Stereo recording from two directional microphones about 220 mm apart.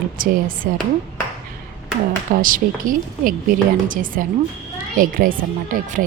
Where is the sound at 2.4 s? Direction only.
40° right (ahead or behind).